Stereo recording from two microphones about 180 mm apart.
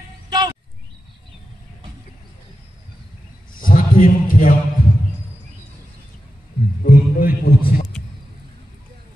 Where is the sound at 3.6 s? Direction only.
50° left (ahead or behind).